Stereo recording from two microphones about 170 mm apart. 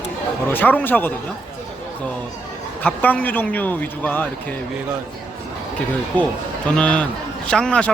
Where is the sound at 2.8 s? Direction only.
10° left (ahead or behind).